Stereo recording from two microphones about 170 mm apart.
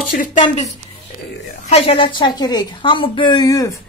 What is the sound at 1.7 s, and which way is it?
A woman's voice, 35° left (ahead or behind).